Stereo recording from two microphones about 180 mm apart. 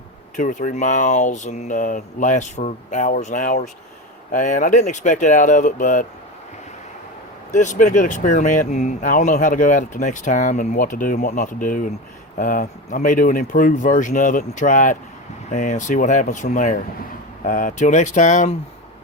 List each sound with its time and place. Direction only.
0.3 s speech: 45° left (ahead or behind)
7.5 s speech: 40° left (ahead or behind)